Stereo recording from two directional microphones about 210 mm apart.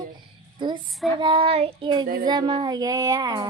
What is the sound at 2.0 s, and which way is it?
Speech, 40° right (ahead or behind).